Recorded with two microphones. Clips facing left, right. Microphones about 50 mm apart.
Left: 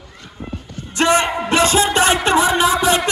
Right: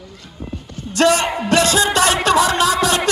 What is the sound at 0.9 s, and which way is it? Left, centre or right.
Music, left.